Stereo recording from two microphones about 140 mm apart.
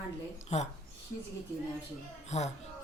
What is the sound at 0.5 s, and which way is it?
Speech, 50° left (ahead or behind).